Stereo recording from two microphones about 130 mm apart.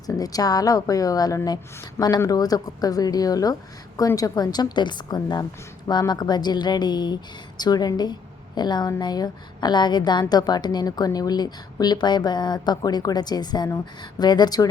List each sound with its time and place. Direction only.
0.2 s a woman's voice: 30° left (ahead or behind)